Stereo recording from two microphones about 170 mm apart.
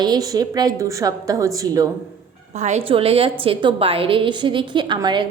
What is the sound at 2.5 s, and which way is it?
A woman's voice, 45° right (ahead or behind).